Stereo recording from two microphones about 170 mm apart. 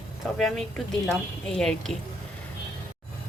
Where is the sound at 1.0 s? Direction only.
5° left (ahead or behind).